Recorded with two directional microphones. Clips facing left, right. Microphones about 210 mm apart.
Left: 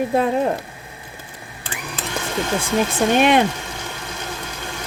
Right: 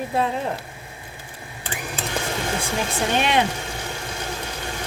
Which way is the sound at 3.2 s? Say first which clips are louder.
Left 6 dB; 50° left (ahead or behind).